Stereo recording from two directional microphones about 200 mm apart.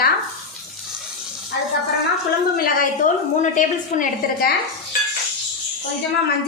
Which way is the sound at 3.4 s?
40° left (ahead or behind).